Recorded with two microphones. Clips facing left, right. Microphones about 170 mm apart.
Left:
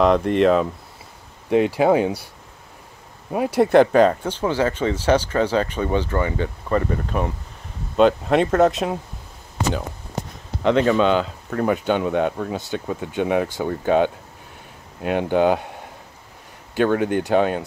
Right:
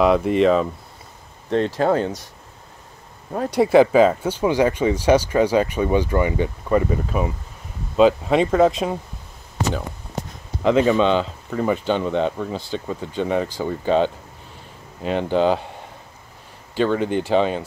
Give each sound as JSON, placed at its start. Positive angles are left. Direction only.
{"t": 0.0, "sound": "speech", "side_deg": -5}
{"t": 1.5, "sound": "speech", "side_deg": 10}
{"t": 3.3, "sound": "speech", "side_deg": 10}
{"t": 10.6, "sound": "speech", "side_deg": -5}
{"t": 16.8, "sound": "speech", "side_deg": 5}